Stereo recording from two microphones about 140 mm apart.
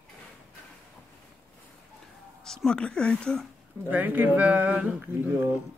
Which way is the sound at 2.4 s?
5° left (ahead or behind).